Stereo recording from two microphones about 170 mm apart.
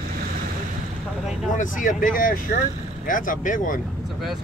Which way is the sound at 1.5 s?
50° left (ahead or behind).